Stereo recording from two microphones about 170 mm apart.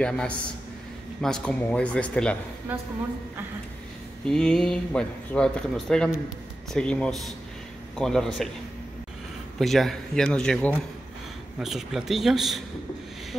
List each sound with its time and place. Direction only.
0.0 s speech: 5° left (ahead or behind)
2.7 s a woman's voice: 10° right (ahead or behind)
4.3 s speech: 5° left (ahead or behind)
9.6 s speech: centre (ahead or behind)